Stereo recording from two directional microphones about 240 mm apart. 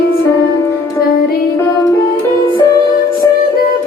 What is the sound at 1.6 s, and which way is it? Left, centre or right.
Music, centre.